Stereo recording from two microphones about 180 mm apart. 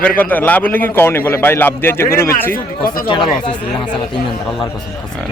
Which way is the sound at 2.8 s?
50° left (ahead or behind).